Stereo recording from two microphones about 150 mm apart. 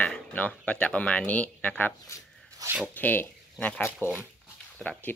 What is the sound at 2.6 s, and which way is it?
Zipper, 25° right (ahead or behind).